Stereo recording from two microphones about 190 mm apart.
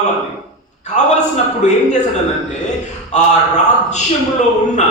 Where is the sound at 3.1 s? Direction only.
40° left (ahead or behind).